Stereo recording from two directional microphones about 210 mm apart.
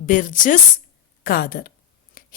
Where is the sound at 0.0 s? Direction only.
40° left (ahead or behind).